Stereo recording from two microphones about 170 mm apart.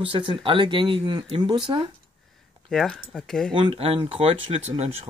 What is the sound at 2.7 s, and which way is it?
Speech, 5° left (ahead or behind).